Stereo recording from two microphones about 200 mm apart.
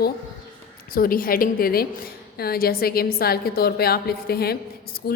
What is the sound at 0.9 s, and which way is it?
A woman's voice, 45° left (ahead or behind).